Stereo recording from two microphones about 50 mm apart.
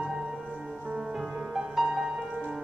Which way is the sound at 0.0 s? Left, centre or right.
Centre.